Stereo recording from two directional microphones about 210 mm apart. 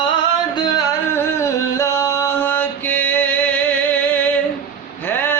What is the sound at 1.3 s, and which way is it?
Music, 15° left (ahead or behind).